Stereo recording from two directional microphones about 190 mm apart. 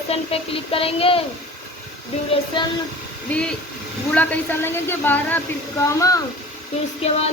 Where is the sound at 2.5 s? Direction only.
25° left (ahead or behind).